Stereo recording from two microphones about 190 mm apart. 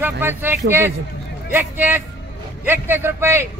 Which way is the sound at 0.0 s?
10° right (ahead or behind).